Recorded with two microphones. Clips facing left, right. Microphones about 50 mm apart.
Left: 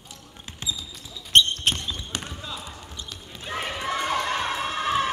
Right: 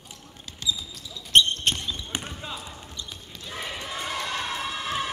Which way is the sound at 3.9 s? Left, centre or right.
Left.